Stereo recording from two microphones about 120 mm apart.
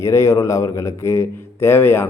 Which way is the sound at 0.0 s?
25° left (ahead or behind).